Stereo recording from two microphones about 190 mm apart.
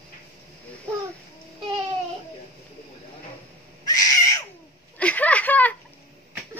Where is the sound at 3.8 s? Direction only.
20° left (ahead or behind).